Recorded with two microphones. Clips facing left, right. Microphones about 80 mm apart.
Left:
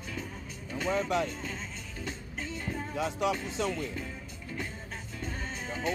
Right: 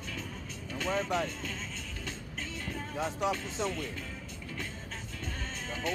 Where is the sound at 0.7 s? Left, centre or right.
Centre.